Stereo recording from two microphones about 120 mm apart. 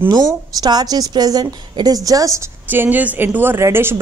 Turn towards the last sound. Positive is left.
turn(degrees=-20)  # may be behind; listen again after turning